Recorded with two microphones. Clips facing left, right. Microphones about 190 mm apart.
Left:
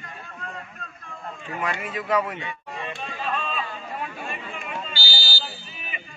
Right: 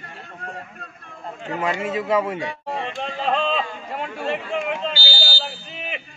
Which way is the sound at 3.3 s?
85° right.